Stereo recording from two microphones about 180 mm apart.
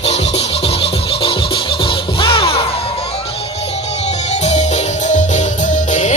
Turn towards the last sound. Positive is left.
turn(degrees=40)  # may be behind; listen again after turning